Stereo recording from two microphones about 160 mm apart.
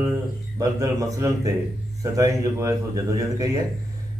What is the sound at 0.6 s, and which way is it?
Speech, 20° right (ahead or behind).